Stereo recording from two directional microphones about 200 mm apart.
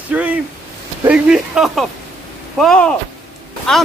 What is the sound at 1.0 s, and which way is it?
Speech, 5° right (ahead or behind).